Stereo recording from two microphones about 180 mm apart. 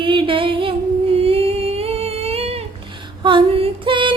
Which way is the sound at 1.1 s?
35° right (ahead or behind).